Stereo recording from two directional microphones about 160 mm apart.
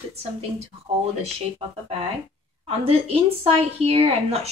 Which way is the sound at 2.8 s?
35° right (ahead or behind).